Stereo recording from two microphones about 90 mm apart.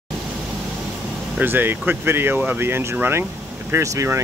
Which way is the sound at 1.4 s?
25° right (ahead or behind).